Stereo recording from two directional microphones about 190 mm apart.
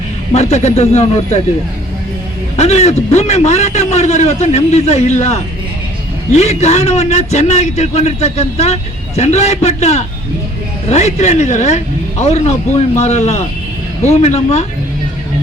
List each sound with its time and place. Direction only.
0.3 s a man's voice: 35° left (ahead or behind)
2.6 s a man's voice: 35° left (ahead or behind)